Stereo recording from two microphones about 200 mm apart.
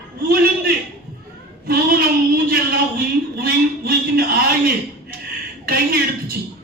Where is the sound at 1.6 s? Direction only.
45° right (ahead or behind).